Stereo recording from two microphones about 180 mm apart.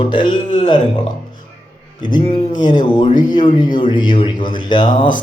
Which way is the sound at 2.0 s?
25° left (ahead or behind).